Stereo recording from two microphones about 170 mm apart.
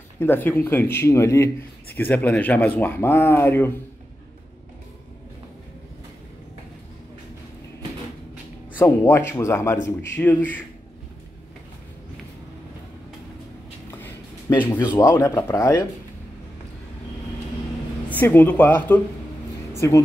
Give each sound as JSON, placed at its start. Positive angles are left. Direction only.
{"t": 0.2, "sound": "speech", "side_deg": 15}
{"t": 8.7, "sound": "speech", "side_deg": 10}
{"t": 13.9, "sound": "a sound", "side_deg": 10}
{"t": 14.8, "sound": "speech", "side_deg": 20}
{"t": 18.1, "sound": "speech", "side_deg": 10}